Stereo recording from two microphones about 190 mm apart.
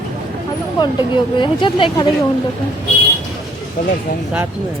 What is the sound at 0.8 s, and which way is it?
Speech, 25° left (ahead or behind).